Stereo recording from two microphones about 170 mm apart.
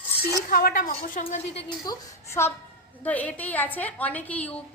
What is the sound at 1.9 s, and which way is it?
Speech, 20° left (ahead or behind).